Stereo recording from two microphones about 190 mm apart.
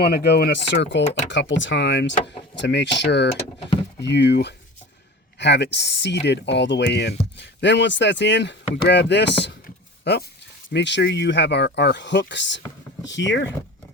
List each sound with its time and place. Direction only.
0.0 s speech: 55° left (ahead or behind); by 13.5 s 70° left (ahead or behind)